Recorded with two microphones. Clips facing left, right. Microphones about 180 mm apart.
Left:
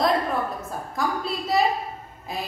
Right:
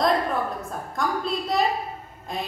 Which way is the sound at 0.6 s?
Centre (ahead or behind).